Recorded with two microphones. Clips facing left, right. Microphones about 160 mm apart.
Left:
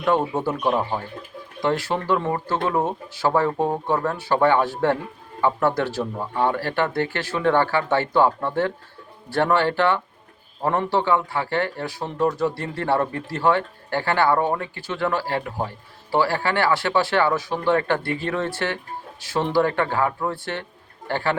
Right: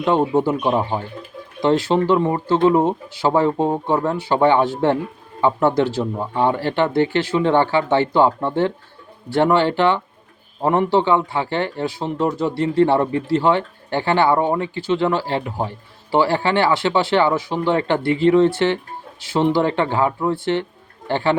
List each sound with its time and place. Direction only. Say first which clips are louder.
0.0 s speech: right 4 dB; 20° right (ahead or behind)